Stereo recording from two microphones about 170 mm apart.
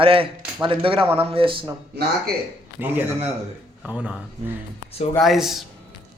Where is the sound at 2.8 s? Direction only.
10° right (ahead or behind).